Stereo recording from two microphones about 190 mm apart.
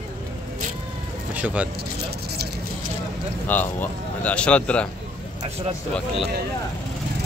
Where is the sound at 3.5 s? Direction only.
10° left (ahead or behind).